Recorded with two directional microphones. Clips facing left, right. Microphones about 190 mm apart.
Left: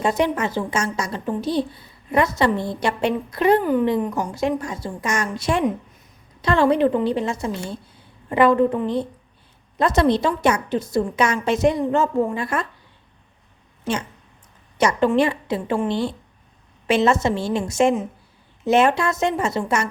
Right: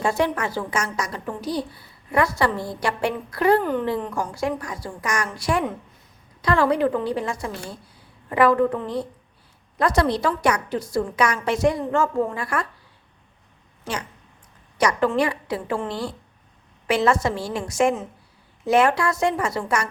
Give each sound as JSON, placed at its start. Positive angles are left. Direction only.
{"t": 0.0, "sound": "a child's voice", "side_deg": 20}
{"t": 3.6, "sound": "a child's voice", "side_deg": 10}
{"t": 13.8, "sound": "a child's voice", "side_deg": 25}